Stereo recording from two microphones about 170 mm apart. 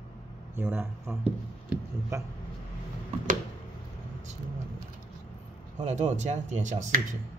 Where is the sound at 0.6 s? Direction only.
10° right (ahead or behind).